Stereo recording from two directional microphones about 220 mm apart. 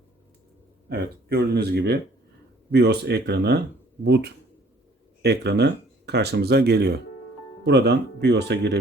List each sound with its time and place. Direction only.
0.9 s speech: 45° right (ahead or behind)